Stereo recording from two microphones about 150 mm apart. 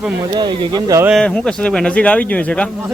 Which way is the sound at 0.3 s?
30° right (ahead or behind).